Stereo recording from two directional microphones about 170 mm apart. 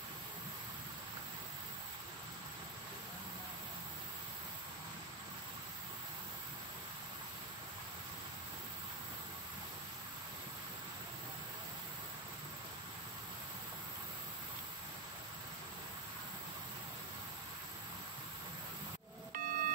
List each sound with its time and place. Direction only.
19.3 s vehicle: 55° right (ahead or behind)